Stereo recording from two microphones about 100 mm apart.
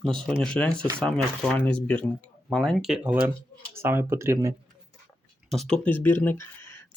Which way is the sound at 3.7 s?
25° right (ahead or behind).